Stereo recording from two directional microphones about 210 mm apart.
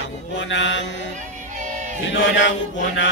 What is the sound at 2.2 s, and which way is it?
Mantra, 60° left (ahead or behind).